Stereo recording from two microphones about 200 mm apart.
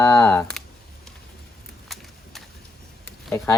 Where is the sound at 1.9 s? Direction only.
Centre (ahead or behind).